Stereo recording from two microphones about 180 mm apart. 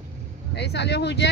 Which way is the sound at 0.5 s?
70° left (ahead or behind).